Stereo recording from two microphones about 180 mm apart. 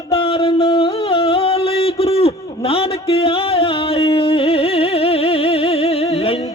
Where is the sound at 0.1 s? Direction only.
30° left (ahead or behind).